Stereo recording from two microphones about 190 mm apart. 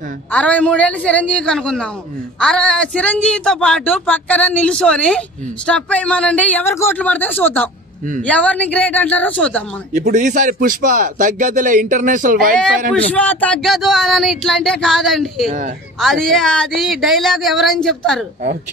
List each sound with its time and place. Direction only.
0.3 s a woman's voice: 5° left (ahead or behind)
9.9 s speech: 40° right (ahead or behind)
12.9 s speech: 5° left (ahead or behind)